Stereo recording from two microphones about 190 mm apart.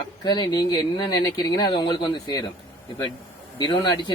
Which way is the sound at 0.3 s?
20° left (ahead or behind).